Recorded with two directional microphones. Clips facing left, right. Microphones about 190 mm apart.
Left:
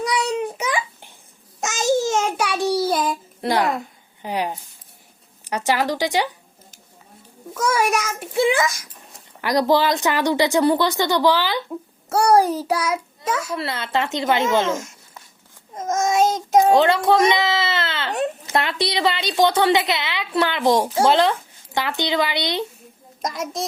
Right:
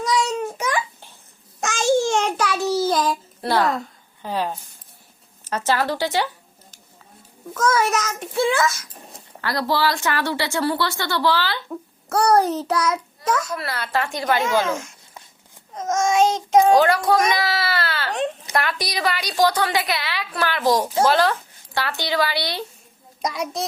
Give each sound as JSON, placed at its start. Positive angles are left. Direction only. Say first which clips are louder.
{"t": 0.4, "sound": "babbling", "louder": "even", "side_deg": 10}
{"t": 2.0, "sound": "a sound", "louder": "even", "side_deg": 5}
{"t": 2.6, "sound": "child singing", "louder": "left 1 dB", "side_deg": 30}
{"t": 2.9, "sound": "child singing", "louder": "right 1 dB", "side_deg": 5}
{"t": 3.4, "sound": "a woman's voice", "louder": "even", "side_deg": 20}
{"t": 7.5, "sound": "speech", "louder": "even", "side_deg": 10}
{"t": 13.6, "sound": "a woman's voice", "louder": "left 2 dB", "side_deg": 25}
{"t": 15.7, "sound": "a child's voice", "louder": "even", "side_deg": 5}
{"t": 16.7, "sound": "a woman's voice", "louder": "left 1 dB", "side_deg": 25}
{"t": 23.2, "sound": "a child's voice", "louder": "right 1 dB", "side_deg": 0}